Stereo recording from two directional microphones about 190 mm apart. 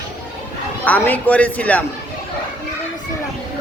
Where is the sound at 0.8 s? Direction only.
10° left (ahead or behind).